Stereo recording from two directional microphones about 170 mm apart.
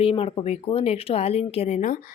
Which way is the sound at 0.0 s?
35° left (ahead or behind).